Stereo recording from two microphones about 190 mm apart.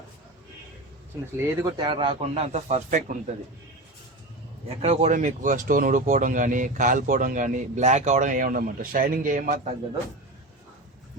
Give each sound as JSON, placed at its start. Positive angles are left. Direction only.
{"t": 1.4, "sound": "a man's voice", "side_deg": -20}
{"t": 4.8, "sound": "speech", "side_deg": -35}